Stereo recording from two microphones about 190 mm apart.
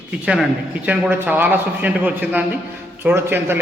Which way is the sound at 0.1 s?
5° right (ahead or behind).